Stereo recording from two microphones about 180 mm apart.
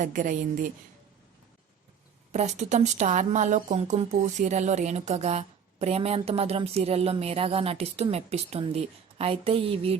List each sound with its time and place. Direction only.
0.0 s a woman's voice: 45° right (ahead or behind)
2.3 s speech: 40° right (ahead or behind)